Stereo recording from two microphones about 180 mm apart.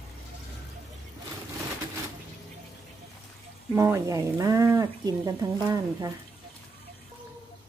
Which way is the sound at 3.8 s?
15° right (ahead or behind).